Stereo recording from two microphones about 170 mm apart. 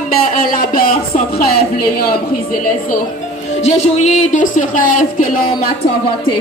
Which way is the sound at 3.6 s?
40° left (ahead or behind).